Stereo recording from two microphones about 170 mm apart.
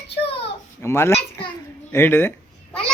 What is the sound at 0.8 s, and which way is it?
Speech, 15° left (ahead or behind).